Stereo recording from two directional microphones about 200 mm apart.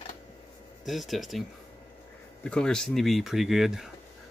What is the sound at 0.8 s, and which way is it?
Speech, centre (ahead or behind).